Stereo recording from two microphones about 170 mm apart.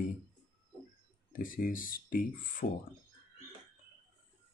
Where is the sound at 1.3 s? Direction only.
55° left (ahead or behind).